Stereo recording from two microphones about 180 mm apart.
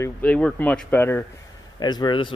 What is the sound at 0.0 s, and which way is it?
Speech, 5° left (ahead or behind).